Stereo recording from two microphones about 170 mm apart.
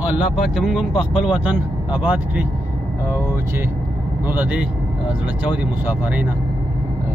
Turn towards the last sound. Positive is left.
turn(degrees=-10)  # may be behind; listen again after turning